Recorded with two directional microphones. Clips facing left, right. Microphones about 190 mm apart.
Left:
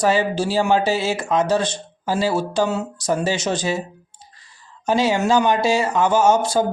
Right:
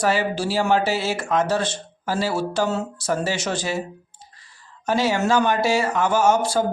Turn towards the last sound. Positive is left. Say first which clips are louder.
# left 2 dB
turn(degrees=20)  # may be behind; listen again after turning